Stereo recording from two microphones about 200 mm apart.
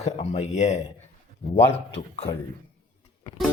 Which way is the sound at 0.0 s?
30° left (ahead or behind).